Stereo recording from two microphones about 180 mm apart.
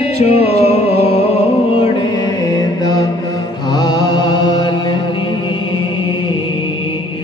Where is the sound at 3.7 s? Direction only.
25° left (ahead or behind).